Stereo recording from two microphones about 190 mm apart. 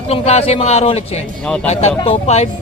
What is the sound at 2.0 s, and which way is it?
Speech, 30° left (ahead or behind).